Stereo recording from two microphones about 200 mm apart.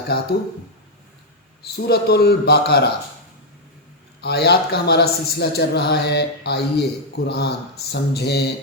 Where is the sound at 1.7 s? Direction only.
55° left (ahead or behind).